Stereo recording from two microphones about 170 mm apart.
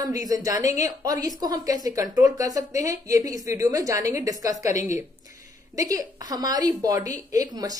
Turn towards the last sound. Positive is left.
turn(degrees=-20)  # may be behind; listen again after turning